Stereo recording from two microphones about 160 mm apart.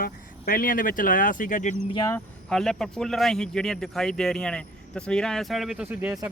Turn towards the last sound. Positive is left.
turn(degrees=-5)  # may be behind; listen again after turning